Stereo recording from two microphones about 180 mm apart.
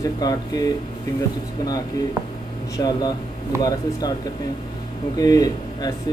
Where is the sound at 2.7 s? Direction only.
20° left (ahead or behind).